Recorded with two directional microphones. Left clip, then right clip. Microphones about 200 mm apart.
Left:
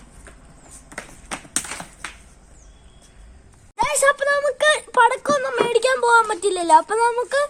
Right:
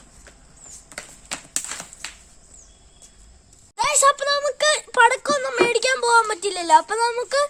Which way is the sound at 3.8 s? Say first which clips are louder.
Even; 25° right (ahead or behind).